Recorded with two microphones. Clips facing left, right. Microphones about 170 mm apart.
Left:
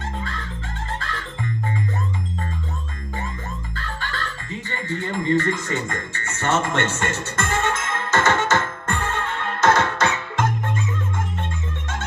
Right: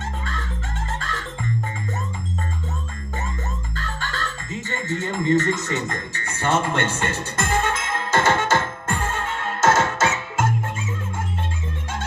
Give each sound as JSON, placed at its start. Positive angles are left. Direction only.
{"t": 3.8, "sound": "music", "side_deg": -40}
{"t": 4.7, "sound": "speech", "side_deg": -45}
{"t": 5.6, "sound": "speech", "side_deg": -20}
{"t": 8.1, "sound": "music", "side_deg": -10}
{"t": 9.6, "sound": "music", "side_deg": -25}
{"t": 10.0, "sound": "music", "side_deg": -5}